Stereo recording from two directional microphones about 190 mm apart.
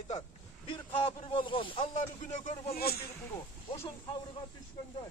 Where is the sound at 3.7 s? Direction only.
25° left (ahead or behind).